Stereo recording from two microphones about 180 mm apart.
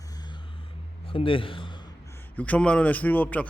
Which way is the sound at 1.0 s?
30° left (ahead or behind).